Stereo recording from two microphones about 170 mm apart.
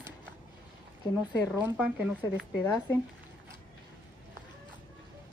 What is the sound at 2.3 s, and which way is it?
Speech, 10° left (ahead or behind).